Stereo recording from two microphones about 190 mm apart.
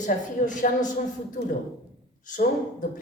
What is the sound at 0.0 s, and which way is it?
Speech, 40° left (ahead or behind).